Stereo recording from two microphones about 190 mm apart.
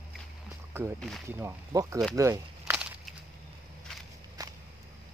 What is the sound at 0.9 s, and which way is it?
Speech, centre (ahead or behind).